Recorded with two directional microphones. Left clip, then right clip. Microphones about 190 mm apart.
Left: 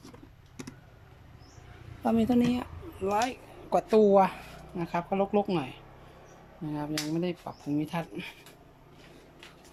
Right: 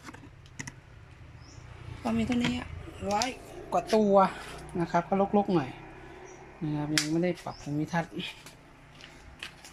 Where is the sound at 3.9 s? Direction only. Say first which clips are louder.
Left 1 dB; 15° left (ahead or behind).